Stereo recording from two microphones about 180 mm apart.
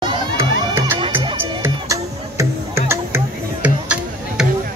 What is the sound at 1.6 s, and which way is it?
Music, 15° right (ahead or behind).